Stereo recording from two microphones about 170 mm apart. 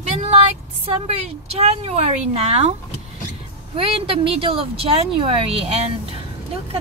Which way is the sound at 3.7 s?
35° right (ahead or behind).